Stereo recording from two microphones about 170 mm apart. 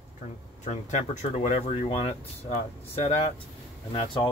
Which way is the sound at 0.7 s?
45° left (ahead or behind).